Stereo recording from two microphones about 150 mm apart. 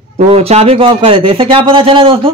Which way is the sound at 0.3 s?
40° right (ahead or behind).